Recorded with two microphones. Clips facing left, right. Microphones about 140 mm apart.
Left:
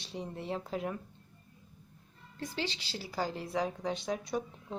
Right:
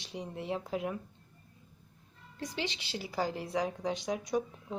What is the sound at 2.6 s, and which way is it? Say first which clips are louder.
A woman's voice: right 1 dB; 20° right (ahead or behind).